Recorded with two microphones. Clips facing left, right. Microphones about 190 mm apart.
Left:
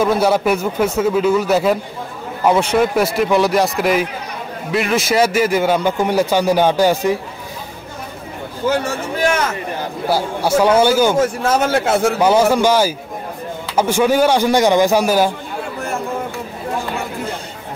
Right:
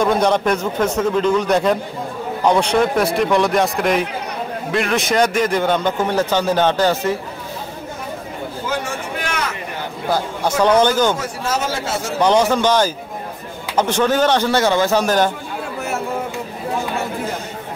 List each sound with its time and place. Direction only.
0.0 s a man's voice: 5° left (ahead or behind)
10.0 s a man's voice: 10° left (ahead or behind)
11.1 s a man's voice: 55° left (ahead or behind)
12.2 s a man's voice: 5° left (ahead or behind)